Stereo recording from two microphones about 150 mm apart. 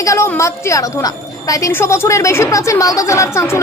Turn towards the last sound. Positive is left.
turn(degrees=20)  # may be behind; listen again after turning